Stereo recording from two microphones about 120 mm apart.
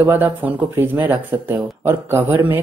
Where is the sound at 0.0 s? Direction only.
20° right (ahead or behind).